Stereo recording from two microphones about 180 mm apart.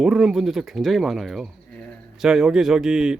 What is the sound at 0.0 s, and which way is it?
Speech, centre (ahead or behind).